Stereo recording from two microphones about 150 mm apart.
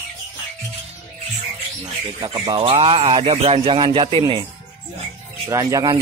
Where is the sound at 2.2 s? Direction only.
30° right (ahead or behind).